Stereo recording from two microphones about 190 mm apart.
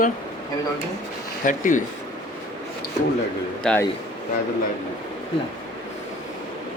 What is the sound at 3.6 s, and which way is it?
Speech, 5° left (ahead or behind).